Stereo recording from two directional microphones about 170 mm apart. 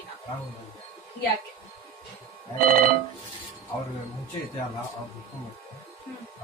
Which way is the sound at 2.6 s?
55° right (ahead or behind).